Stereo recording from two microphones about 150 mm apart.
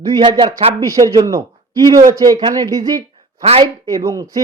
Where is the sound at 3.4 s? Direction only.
45° right (ahead or behind).